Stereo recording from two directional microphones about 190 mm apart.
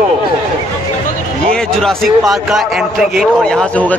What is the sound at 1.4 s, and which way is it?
A man's voice, 5° left (ahead or behind).